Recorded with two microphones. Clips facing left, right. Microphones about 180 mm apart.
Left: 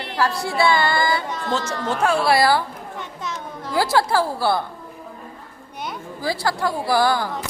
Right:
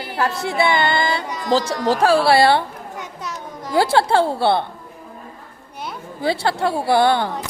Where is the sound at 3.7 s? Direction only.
25° right (ahead or behind).